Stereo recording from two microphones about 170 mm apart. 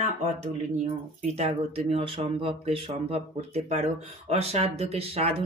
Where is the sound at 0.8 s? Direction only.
40° right (ahead or behind).